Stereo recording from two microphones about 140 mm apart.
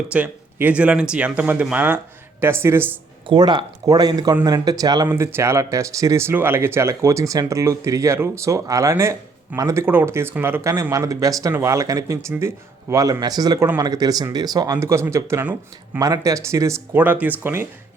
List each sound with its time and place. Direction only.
0.1 s speech: 10° right (ahead or behind)
3.2 s speech: 30° right (ahead or behind); by 16.0 s 15° right (ahead or behind)
16.0 s speech: 25° right (ahead or behind)